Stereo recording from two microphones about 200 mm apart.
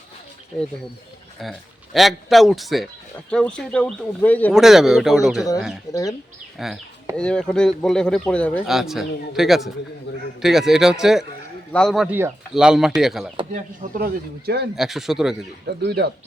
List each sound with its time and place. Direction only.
1.4 s a man's voice: centre (ahead or behind)
5.9 s speech: 15° left (ahead or behind)
6.6 s a man's voice: centre (ahead or behind)
10.1 s a man's voice: 60° left (ahead or behind)
10.4 s a man's voice: centre (ahead or behind)
13.5 s a man's voice: 40° right (ahead or behind)
14.8 s a man's voice: centre (ahead or behind)
15.8 s a man's voice: 55° right (ahead or behind)